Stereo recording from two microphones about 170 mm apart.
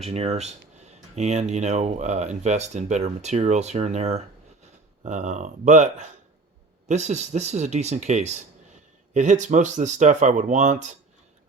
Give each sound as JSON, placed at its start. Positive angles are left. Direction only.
{"t": 0.0, "sound": "speech", "side_deg": -35}